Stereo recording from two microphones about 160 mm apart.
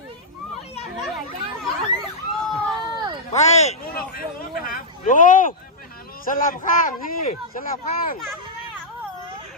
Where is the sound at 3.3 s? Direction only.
45° left (ahead or behind).